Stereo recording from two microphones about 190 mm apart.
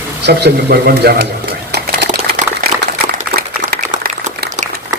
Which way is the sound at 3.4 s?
50° right (ahead or behind).